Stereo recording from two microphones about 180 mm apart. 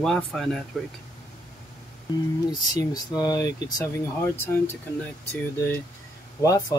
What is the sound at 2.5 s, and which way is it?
Speech, 20° left (ahead or behind).